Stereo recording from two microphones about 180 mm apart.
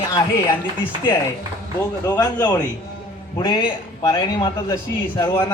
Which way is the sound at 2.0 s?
20° left (ahead or behind).